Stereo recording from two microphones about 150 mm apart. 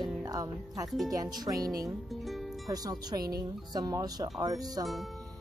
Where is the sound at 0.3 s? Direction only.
25° right (ahead or behind).